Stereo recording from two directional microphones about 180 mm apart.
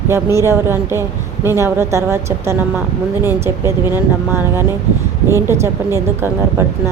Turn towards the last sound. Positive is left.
turn(degrees=-15)  # may be behind; listen again after turning